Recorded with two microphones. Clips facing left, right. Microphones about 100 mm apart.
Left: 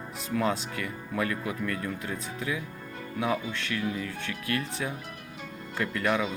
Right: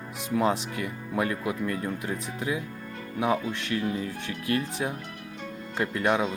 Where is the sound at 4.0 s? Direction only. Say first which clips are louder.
Right 2 dB; 30° right (ahead or behind).